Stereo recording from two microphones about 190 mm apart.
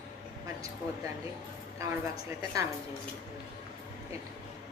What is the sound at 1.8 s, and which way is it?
Speech, 15° right (ahead or behind).